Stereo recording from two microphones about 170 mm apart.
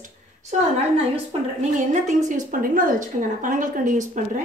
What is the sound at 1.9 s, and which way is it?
A woman's voice, 45° right (ahead or behind).